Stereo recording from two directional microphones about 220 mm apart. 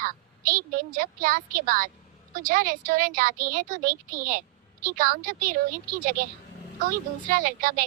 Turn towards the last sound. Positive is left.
turn(degrees=-40)  # may be behind; listen again after turning